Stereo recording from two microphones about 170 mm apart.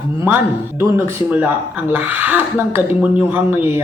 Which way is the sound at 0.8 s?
15° right (ahead or behind).